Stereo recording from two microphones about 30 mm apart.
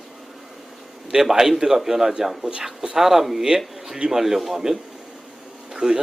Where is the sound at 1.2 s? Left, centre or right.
Centre.